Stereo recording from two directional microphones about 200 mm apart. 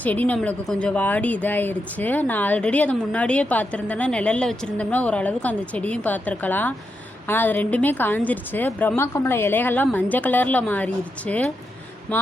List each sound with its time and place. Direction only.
0.0 s a woman's voice: 10° left (ahead or behind)